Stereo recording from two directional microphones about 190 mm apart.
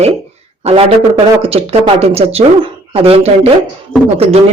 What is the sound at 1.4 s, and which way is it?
Speech, 30° right (ahead or behind).